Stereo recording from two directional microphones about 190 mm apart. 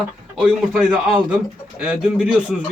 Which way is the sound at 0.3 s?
5° right (ahead or behind).